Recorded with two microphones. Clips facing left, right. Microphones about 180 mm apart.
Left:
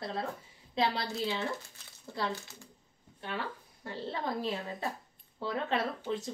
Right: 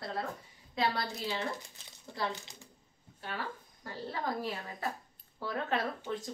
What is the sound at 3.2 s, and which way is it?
A woman's voice, 25° left (ahead or behind).